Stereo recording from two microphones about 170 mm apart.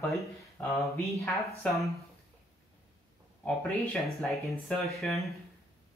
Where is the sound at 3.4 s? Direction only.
10° left (ahead or behind).